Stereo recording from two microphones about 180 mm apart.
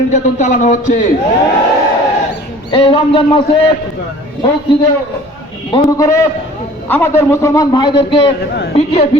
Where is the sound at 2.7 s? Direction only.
25° left (ahead or behind).